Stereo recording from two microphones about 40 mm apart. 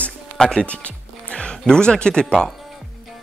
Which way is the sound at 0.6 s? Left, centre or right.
Left.